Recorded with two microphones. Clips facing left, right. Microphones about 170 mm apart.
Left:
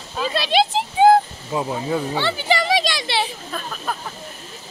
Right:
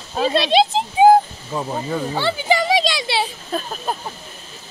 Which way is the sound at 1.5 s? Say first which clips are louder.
Left 1 dB; 10° left (ahead or behind).